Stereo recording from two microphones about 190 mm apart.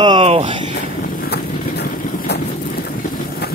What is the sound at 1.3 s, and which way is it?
Vehicle, 60° left (ahead or behind).